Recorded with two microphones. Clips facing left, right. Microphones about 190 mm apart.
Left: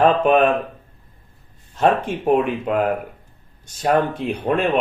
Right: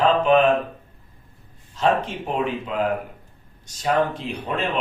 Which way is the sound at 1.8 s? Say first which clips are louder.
Left 3 dB; 55° left (ahead or behind).